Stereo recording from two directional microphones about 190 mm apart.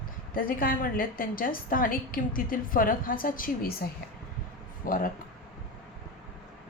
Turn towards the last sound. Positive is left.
turn(degrees=45)  # may be behind; listen again after turning